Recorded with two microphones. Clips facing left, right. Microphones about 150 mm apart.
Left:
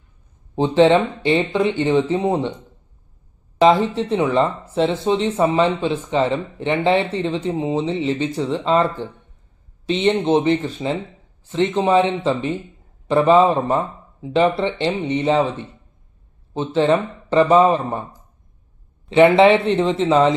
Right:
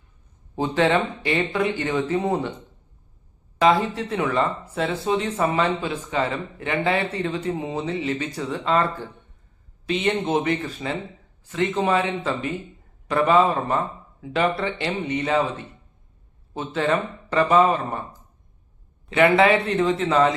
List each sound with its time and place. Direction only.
0.5 s speech: 25° left (ahead or behind)
3.6 s speech: 25° left (ahead or behind)
16.6 s speech: 25° left (ahead or behind)
19.1 s speech: 25° left (ahead or behind)